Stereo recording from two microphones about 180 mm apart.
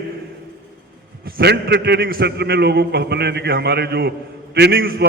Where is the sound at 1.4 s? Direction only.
65° right (ahead or behind).